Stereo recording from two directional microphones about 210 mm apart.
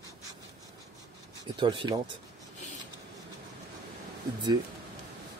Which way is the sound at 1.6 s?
25° right (ahead or behind).